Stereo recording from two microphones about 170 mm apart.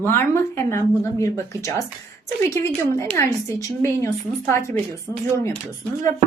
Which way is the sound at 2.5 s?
15° left (ahead or behind).